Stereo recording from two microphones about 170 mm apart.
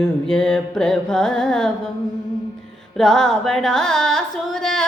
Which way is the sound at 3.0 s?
Centre (ahead or behind).